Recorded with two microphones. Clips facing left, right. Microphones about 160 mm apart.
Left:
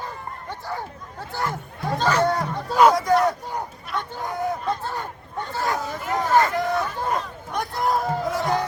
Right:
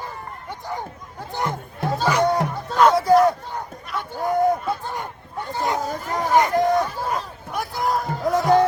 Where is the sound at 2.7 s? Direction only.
5° left (ahead or behind).